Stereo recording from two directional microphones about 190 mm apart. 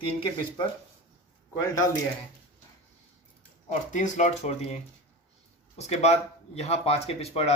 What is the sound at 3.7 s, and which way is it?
Speech, 40° left (ahead or behind).